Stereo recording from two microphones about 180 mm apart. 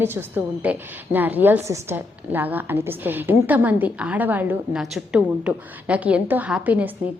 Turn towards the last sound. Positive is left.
turn(degrees=-10)  # may be behind; listen again after turning